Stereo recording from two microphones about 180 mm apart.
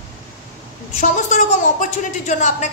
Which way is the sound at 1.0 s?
45° left (ahead or behind).